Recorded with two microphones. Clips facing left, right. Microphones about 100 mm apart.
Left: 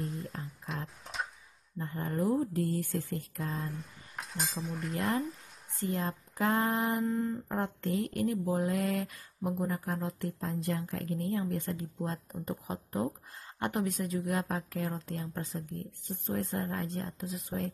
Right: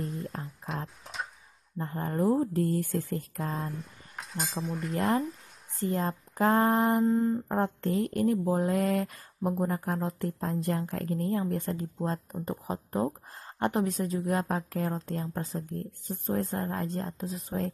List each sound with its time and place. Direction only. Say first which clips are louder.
0.0 s music: right 3 dB; centre (ahead or behind)
1.0 s a sound: even; centre (ahead or behind)
1.8 s speech: right 4 dB; 40° right (ahead or behind)
3.6 s speech: right 3 dB; centre (ahead or behind)
5.8 s speech: right 4 dB; 35° right (ahead or behind)